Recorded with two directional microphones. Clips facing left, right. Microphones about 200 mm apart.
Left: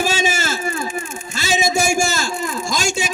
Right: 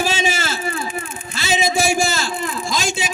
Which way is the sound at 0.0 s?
45° left (ahead or behind).